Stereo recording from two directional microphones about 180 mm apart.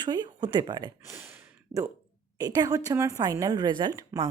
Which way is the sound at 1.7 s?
50° right (ahead or behind).